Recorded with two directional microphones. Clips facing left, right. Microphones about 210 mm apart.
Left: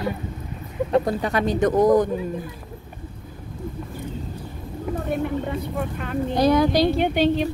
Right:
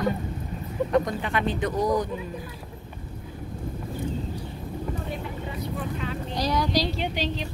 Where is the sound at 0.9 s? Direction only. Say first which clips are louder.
Left 4 dB; 35° left (ahead or behind); by 2.1 s 50° left (ahead or behind).